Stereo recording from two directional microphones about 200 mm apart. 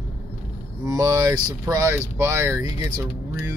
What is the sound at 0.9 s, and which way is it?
Speech, 15° right (ahead or behind).